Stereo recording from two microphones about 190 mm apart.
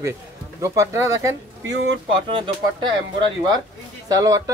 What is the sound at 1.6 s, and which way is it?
Speech, 70° right (ahead or behind).